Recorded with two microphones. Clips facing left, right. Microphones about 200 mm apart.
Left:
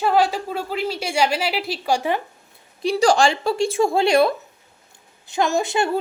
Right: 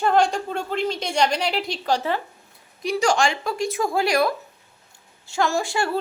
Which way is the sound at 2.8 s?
30° left (ahead or behind).